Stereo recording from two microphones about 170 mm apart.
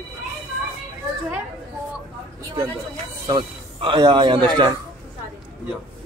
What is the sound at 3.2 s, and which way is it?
Speech, 30° right (ahead or behind).